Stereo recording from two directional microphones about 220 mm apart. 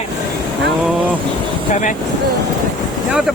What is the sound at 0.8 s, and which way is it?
Speech, 5° right (ahead or behind).